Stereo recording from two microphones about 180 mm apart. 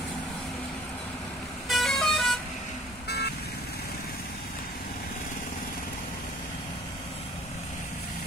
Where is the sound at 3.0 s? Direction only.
65° left (ahead or behind).